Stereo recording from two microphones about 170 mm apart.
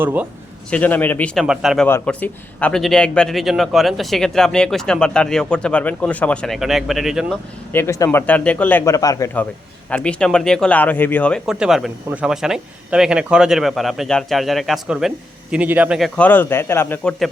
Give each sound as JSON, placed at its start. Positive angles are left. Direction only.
{"t": 0.0, "sound": "a man's voice", "side_deg": -10}
{"t": 0.7, "sound": "a man's voice", "side_deg": 10}
{"t": 1.9, "sound": "speech", "side_deg": 10}
{"t": 7.7, "sound": "a man's voice", "side_deg": 15}
{"t": 9.9, "sound": "a man's voice", "side_deg": 5}